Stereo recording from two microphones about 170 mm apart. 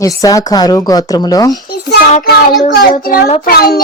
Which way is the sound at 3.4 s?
65° left (ahead or behind).